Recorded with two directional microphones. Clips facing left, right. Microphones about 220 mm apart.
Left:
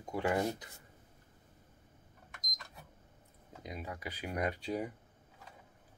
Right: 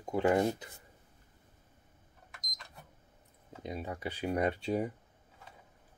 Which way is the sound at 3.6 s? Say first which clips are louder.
Right 5 dB; 30° right (ahead or behind).